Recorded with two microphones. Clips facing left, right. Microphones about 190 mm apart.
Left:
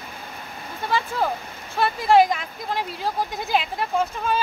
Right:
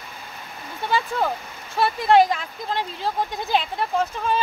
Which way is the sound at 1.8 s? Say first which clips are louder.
Even; centre (ahead or behind).